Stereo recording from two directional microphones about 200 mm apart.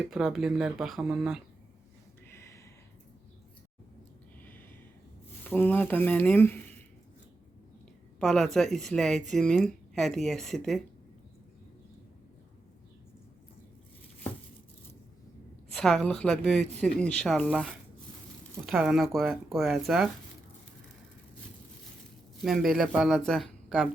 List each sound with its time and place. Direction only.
0.1 s speech: centre (ahead or behind)
2.2 s a sound: 15° left (ahead or behind)
4.4 s a sound: 10° left (ahead or behind)
5.5 s speech: 10° left (ahead or behind)
8.2 s speech: centre (ahead or behind)
15.7 s speech: centre (ahead or behind)
22.4 s speech: centre (ahead or behind)